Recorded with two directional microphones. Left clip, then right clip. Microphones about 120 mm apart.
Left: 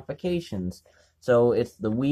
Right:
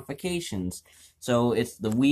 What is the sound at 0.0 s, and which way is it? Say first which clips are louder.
Speech: left 2 dB; 30° left (ahead or behind).